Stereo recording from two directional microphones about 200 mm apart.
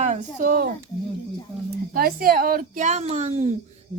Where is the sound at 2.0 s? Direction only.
50° right (ahead or behind).